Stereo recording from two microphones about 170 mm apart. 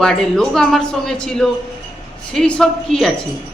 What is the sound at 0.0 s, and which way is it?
A woman's voice, 5° left (ahead or behind).